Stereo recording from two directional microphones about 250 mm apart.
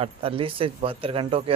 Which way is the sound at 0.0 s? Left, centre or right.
Right.